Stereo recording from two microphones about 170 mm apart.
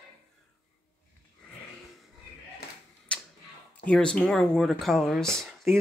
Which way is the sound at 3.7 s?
5° left (ahead or behind).